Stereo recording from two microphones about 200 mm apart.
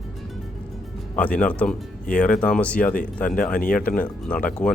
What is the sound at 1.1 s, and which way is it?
Speech, 5° left (ahead or behind).